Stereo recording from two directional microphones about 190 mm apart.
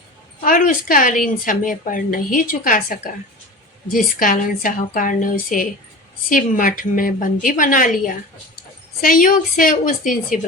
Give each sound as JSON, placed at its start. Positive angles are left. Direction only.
{"t": 0.4, "sound": "a woman's voice", "side_deg": 45}